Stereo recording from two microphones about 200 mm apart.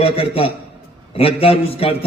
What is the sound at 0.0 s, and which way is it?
A man's voice, 30° left (ahead or behind).